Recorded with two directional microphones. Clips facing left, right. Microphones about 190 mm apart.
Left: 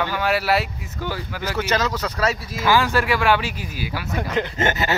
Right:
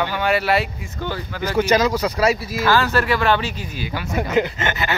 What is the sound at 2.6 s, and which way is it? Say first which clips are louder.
Speech: even; 15° left (ahead or behind).